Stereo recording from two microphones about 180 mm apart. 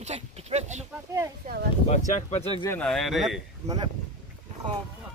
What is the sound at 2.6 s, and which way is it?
Speech, 5° left (ahead or behind).